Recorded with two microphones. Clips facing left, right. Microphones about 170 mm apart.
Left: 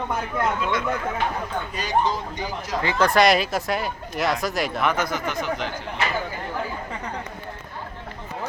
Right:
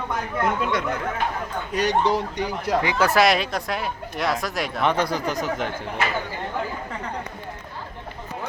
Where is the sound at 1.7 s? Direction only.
70° right (ahead or behind).